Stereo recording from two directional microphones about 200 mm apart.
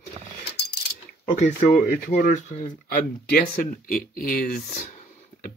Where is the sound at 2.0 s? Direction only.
45° left (ahead or behind).